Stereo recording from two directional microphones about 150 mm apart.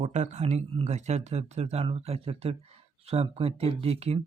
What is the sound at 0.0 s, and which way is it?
Speech, 50° right (ahead or behind).